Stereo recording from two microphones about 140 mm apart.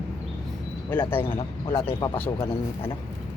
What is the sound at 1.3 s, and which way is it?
Speech, 25° left (ahead or behind).